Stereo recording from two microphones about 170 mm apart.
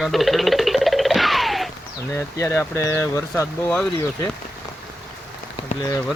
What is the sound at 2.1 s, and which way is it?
Speech, 15° left (ahead or behind).